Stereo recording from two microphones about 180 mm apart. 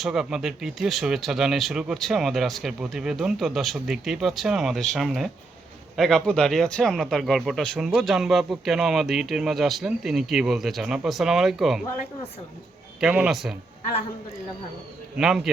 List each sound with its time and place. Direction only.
0.0 s speech: centre (ahead or behind)
13.0 s speech: 5° right (ahead or behind)
15.2 s speech: 5° right (ahead or behind)